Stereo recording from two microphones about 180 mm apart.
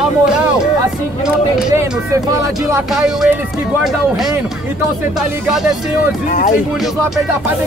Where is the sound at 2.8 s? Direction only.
Centre (ahead or behind).